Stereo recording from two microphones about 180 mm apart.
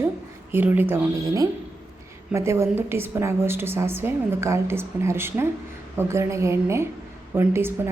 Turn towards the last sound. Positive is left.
turn(degrees=-15)  # may be behind; listen again after turning